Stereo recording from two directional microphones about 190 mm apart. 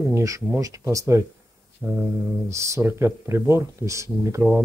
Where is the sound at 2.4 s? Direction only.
15° right (ahead or behind).